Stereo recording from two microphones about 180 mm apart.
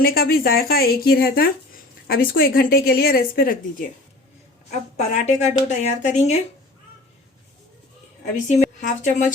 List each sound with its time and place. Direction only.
0.0 s speech: 55° left (ahead or behind)
4.9 s speech: 40° left (ahead or behind)
8.2 s a woman's voice: 45° left (ahead or behind)